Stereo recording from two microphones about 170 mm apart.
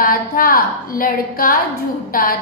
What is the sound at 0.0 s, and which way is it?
A woman's voice, 55° left (ahead or behind).